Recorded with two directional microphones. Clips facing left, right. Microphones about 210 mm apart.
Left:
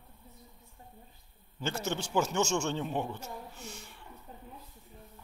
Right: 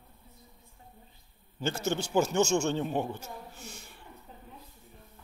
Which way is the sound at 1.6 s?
40° right (ahead or behind).